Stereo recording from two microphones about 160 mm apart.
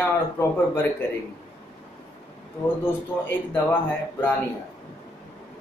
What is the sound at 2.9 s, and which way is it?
A man's voice, 15° left (ahead or behind).